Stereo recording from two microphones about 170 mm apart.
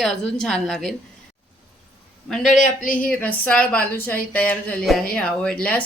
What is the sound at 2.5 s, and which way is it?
Speech, 50° left (ahead or behind).